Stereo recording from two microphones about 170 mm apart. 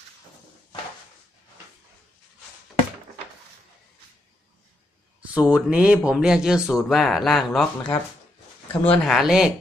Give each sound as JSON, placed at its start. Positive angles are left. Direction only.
{"t": 5.3, "sound": "speech", "side_deg": -5}